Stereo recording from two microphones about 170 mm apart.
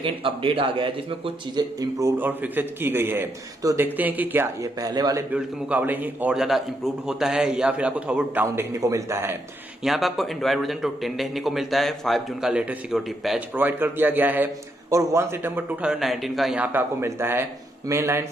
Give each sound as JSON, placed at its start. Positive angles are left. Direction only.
{"t": 0.0, "sound": "a man's voice", "side_deg": -30}
{"t": 4.9, "sound": "a man's voice", "side_deg": -25}
{"t": 5.3, "sound": "a man's voice", "side_deg": -10}
{"t": 9.8, "sound": "a man's voice", "side_deg": 0}
{"t": 16.7, "sound": "a man's voice", "side_deg": -15}